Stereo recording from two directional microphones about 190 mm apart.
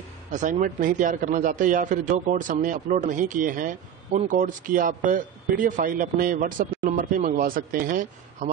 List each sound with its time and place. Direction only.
0.3 s a man's voice: 40° right (ahead or behind)